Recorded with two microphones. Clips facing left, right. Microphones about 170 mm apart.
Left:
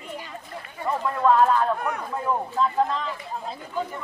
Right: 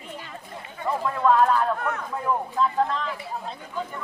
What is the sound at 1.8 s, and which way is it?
Speech, 15° left (ahead or behind).